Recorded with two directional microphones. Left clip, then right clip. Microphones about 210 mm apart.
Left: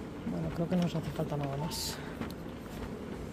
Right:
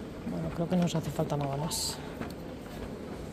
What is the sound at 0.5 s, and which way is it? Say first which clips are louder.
Speech: right 3 dB; 5° right (ahead or behind).